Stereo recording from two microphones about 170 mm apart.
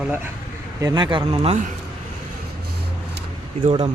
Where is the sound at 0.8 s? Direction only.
25° right (ahead or behind).